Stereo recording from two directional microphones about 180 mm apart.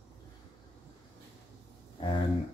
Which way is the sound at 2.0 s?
30° left (ahead or behind).